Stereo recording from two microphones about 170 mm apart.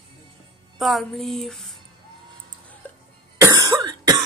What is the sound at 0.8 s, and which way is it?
Speech, centre (ahead or behind).